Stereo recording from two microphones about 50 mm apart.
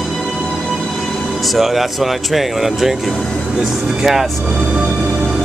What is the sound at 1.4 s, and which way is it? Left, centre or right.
Speech, centre.